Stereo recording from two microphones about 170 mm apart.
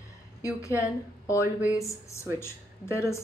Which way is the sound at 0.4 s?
20° left (ahead or behind).